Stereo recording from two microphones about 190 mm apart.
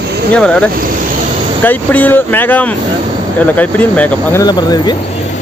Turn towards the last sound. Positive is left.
turn(degrees=20)  # may be behind; listen again after turning